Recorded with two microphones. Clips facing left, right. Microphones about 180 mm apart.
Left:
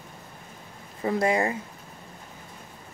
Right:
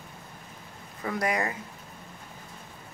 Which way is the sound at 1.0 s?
25° left (ahead or behind).